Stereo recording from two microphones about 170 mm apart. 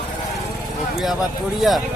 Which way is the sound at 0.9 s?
Centre (ahead or behind).